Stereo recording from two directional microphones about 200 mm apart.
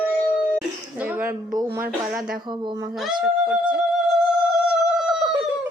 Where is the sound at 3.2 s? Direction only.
5° right (ahead or behind).